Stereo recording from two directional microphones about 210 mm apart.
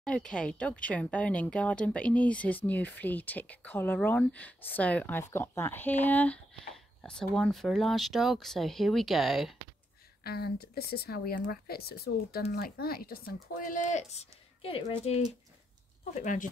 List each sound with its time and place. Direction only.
0.0 s speech: 5° left (ahead or behind)
10.2 s speech: 45° left (ahead or behind)